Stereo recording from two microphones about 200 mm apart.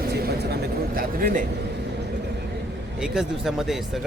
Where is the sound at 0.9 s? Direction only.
45° right (ahead or behind).